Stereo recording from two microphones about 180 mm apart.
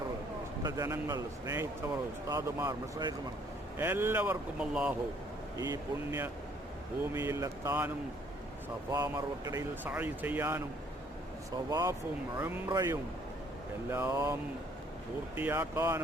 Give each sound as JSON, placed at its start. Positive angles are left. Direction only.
{"t": 0.6, "sound": "speech", "side_deg": -20}
{"t": 5.5, "sound": "speech", "side_deg": -20}
{"t": 9.8, "sound": "speech", "side_deg": -10}
{"t": 15.4, "sound": "speech", "side_deg": -15}